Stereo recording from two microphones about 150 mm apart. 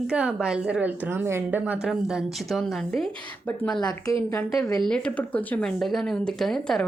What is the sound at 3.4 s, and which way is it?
A woman's voice, 15° left (ahead or behind).